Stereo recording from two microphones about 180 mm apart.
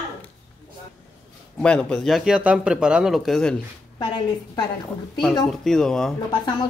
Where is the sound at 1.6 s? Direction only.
5° left (ahead or behind).